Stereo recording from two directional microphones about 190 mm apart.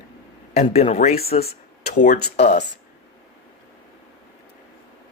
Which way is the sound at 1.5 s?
40° left (ahead or behind).